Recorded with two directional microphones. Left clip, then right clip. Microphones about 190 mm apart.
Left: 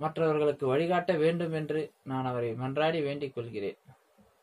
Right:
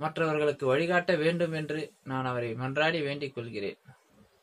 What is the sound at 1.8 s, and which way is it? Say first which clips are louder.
Speech: even; 30° right (ahead or behind).